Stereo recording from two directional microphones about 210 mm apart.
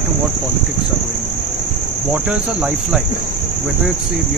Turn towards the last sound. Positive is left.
turn(degrees=-5)  # may be behind; listen again after turning